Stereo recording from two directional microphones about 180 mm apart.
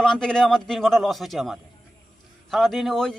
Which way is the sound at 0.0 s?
5° left (ahead or behind).